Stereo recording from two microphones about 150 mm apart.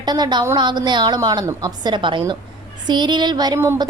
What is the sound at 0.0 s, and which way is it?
A woman's voice, 30° right (ahead or behind).